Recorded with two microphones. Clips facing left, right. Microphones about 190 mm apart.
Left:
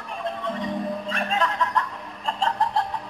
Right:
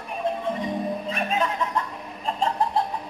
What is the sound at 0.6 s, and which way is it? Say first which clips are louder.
Music: right 1 dB; 10° right (ahead or behind).